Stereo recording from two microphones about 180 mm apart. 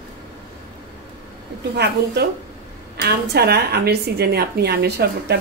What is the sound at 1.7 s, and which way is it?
A woman's voice, 65° right (ahead or behind).